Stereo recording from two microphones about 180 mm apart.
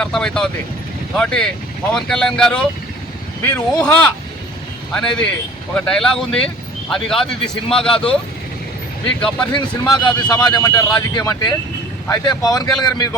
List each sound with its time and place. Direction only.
0.0 s speech: 5° left (ahead or behind)
4.9 s speech: 5° left (ahead or behind)
9.5 s speech: 25° left (ahead or behind)